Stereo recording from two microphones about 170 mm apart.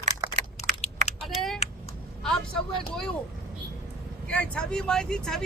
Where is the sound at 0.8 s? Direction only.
40° left (ahead or behind).